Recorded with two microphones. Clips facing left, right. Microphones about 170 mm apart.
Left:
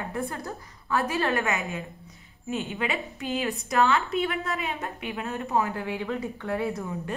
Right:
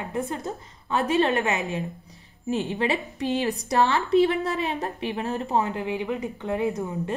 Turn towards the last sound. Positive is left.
turn(degrees=-20)  # may be behind; listen again after turning